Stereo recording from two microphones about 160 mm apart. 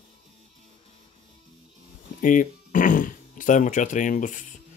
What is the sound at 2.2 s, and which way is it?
Speech, 55° left (ahead or behind).